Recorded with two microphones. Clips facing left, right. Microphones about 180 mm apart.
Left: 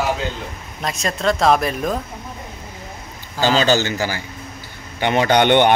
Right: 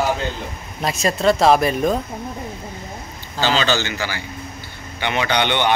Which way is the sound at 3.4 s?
45° left (ahead or behind).